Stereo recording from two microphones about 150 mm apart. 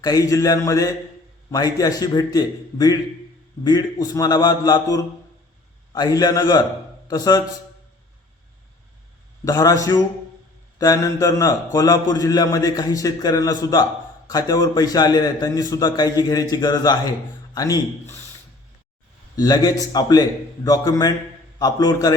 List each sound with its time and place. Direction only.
0.0 s a man's voice: 25° left (ahead or behind)
9.4 s a man's voice: 25° left (ahead or behind)
19.4 s a man's voice: 25° left (ahead or behind)